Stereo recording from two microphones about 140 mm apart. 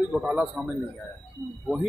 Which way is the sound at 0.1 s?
5° right (ahead or behind).